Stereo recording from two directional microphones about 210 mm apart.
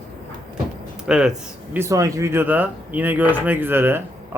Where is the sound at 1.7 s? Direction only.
15° right (ahead or behind).